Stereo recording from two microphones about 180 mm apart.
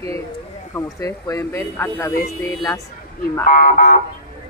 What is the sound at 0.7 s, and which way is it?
Speech, 15° left (ahead or behind).